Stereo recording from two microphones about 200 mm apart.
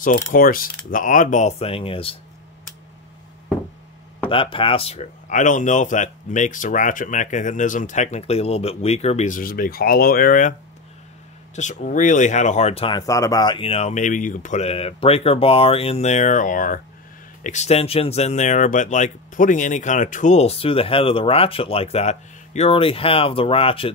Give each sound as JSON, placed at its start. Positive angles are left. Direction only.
{"t": 0.0, "sound": "mechanisms", "side_deg": 45}
{"t": 0.8, "sound": "speech", "side_deg": 40}
{"t": 4.3, "sound": "speech", "side_deg": 25}
{"t": 11.5, "sound": "speech", "side_deg": 35}